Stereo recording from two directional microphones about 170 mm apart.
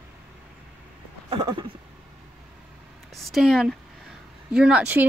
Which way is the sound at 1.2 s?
25° right (ahead or behind).